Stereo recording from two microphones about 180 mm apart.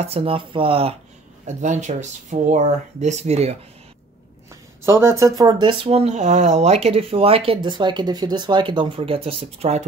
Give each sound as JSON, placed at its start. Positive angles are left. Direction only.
{"t": 0.0, "sound": "speech", "side_deg": -30}
{"t": 1.6, "sound": "speech", "side_deg": -40}
{"t": 4.8, "sound": "speech", "side_deg": -15}